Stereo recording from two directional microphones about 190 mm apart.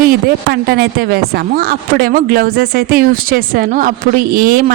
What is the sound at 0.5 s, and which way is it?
A woman's voice, 55° right (ahead or behind).